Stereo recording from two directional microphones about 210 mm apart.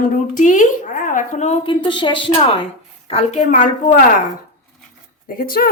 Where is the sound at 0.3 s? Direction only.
35° left (ahead or behind).